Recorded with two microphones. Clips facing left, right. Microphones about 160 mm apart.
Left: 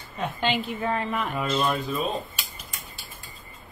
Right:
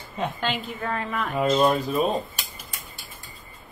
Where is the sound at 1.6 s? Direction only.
50° right (ahead or behind).